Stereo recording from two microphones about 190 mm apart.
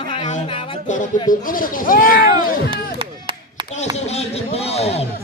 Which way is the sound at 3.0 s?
30° right (ahead or behind).